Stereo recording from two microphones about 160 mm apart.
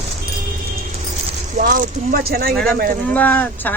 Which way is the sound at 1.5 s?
60° right (ahead or behind).